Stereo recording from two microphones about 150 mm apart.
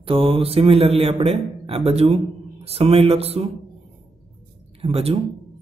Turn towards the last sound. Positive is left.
turn(degrees=-40)  # may be behind; listen again after turning